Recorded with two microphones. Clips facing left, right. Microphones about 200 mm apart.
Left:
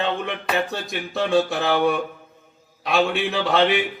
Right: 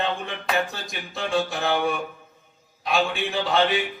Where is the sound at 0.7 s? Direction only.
65° left (ahead or behind).